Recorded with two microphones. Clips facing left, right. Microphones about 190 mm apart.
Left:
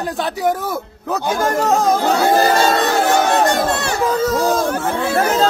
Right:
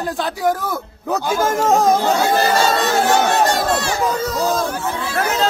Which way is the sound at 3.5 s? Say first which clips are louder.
Left 1 dB; 60° left (ahead or behind).